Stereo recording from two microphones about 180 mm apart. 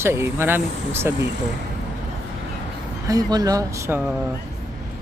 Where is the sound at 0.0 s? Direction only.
15° right (ahead or behind).